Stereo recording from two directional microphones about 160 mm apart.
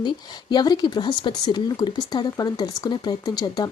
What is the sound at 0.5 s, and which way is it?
Speech, 25° left (ahead or behind).